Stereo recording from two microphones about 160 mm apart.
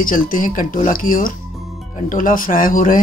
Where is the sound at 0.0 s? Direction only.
60° left (ahead or behind).